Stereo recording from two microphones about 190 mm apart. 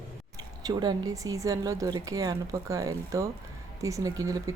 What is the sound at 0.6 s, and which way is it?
Speech, 20° right (ahead or behind).